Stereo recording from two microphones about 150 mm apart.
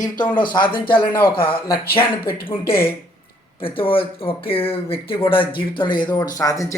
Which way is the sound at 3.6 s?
35° left (ahead or behind).